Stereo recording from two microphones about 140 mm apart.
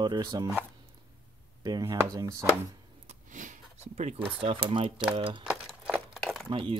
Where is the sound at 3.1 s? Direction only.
65° right (ahead or behind).